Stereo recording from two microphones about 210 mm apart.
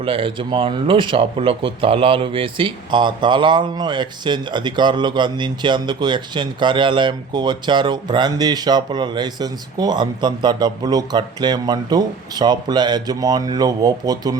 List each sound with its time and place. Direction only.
0.0 s speech: 25° right (ahead or behind)